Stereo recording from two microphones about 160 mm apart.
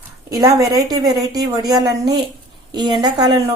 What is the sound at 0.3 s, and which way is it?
A woman's voice, 25° right (ahead or behind).